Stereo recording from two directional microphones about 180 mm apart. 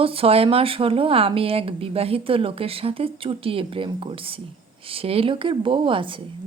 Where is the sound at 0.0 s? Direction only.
30° right (ahead or behind).